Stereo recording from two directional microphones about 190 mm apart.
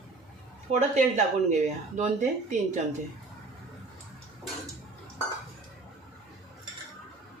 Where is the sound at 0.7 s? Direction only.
40° right (ahead or behind).